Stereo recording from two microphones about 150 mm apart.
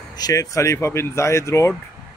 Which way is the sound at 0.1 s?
25° left (ahead or behind).